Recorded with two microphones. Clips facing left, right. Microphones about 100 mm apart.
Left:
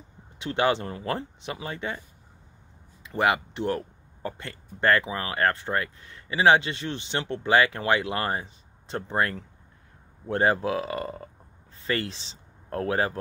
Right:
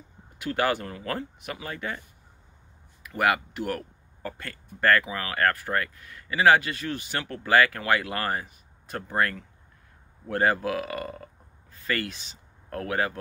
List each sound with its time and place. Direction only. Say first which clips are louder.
0.4 s speech: left 2 dB; 25° left (ahead or behind)
3.0 s speech: left 1 dB; 25° left (ahead or behind)